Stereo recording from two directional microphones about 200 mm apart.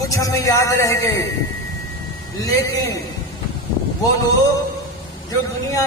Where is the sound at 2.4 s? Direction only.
15° left (ahead or behind).